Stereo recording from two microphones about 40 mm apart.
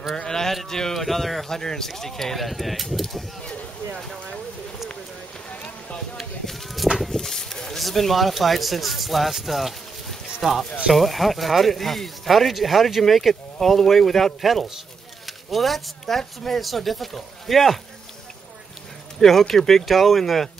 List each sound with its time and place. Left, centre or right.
0.1 s a sound: centre
0.7 s speech: centre
0.9 s speech: centre
5.5 s run: left
6.4 s a sound: centre
7.8 s speech: centre
19.1 s speech: centre